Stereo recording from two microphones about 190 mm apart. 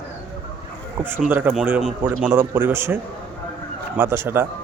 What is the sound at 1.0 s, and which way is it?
Speech, 10° right (ahead or behind).